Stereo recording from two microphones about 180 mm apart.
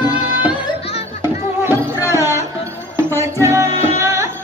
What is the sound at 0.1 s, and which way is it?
Music, 5° right (ahead or behind).